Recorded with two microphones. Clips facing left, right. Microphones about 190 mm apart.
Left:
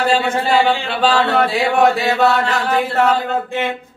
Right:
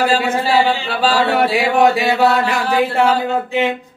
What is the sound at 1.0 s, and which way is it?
Speech, 10° right (ahead or behind).